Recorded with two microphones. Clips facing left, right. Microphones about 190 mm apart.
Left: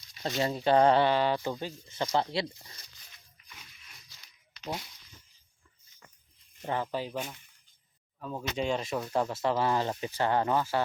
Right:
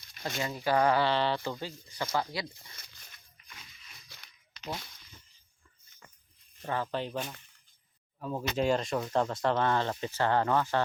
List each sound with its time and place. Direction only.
0.2 s speech: 30° left (ahead or behind)
1.1 s speech: 15° left (ahead or behind)
4.1 s a sound: 55° right (ahead or behind)
6.6 s speech: 20° left (ahead or behind)
8.2 s speech: 5° right (ahead or behind); by 10.8 s 10° left (ahead or behind)